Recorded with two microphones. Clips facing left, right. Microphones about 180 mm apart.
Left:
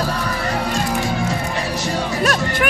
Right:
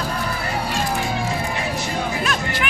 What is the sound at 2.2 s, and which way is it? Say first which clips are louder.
Music: left 5 dB; 45° left (ahead or behind).